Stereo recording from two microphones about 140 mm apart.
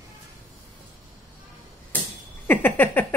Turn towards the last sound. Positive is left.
turn(degrees=15)  # may be behind; listen again after turning